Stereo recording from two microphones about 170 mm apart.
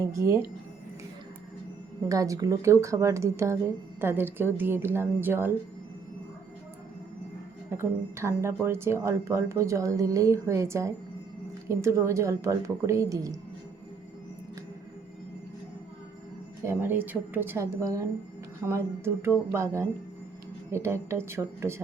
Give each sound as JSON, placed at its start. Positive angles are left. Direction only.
{"t": 0.1, "sound": "speech", "side_deg": -15}
{"t": 2.0, "sound": "speech", "side_deg": -20}
{"t": 7.7, "sound": "speech", "side_deg": -15}
{"t": 16.6, "sound": "speech", "side_deg": -10}